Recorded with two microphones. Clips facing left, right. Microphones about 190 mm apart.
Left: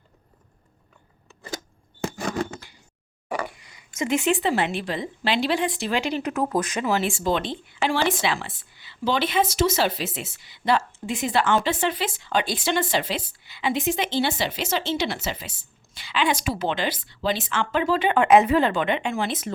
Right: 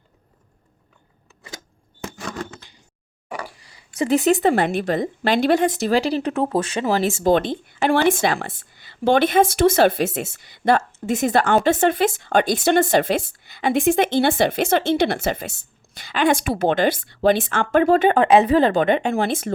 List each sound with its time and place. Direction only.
3.5 s speech: 35° right (ahead or behind); by 19.5 s 50° right (ahead or behind)